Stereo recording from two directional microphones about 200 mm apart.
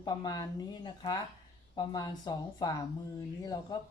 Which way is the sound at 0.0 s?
20° left (ahead or behind).